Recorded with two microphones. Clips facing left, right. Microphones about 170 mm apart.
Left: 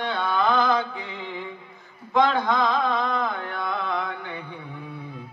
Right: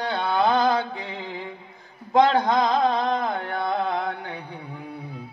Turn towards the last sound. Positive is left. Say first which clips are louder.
# right 3 dB
turn(degrees=-40)  # may be behind; listen again after turning